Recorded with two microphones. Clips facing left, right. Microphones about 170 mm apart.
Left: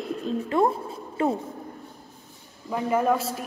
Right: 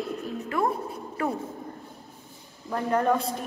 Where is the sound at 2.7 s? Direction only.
5° left (ahead or behind).